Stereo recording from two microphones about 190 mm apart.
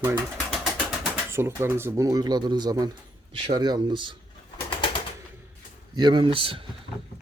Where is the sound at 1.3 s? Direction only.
10° right (ahead or behind).